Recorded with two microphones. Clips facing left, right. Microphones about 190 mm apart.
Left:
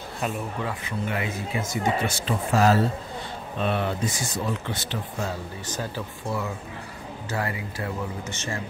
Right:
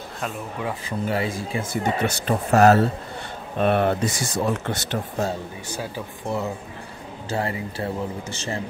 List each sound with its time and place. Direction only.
0.8 s speech: 35° right (ahead or behind)
1.7 s speech: 65° right (ahead or behind)
5.7 s a man's voice: 10° right (ahead or behind); by 8.5 s 30° right (ahead or behind)